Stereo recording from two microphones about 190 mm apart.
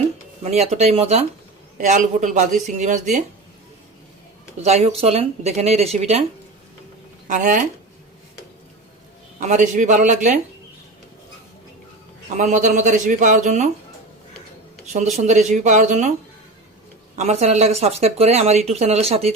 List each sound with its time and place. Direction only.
0.4 s speech: 35° right (ahead or behind)
4.6 s speech: 35° right (ahead or behind)
7.3 s speech: 40° right (ahead or behind)
9.4 s speech: 40° right (ahead or behind)
12.4 s speech: 40° right (ahead or behind)
15.2 s speech: 40° right (ahead or behind)
17.2 s speech: 35° right (ahead or behind)